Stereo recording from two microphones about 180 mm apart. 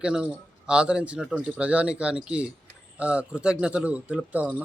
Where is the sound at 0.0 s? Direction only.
5° right (ahead or behind).